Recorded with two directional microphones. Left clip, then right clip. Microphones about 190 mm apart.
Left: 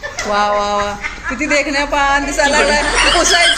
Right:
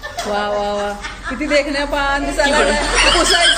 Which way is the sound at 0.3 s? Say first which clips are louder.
Left 5 dB; 5° left (ahead or behind).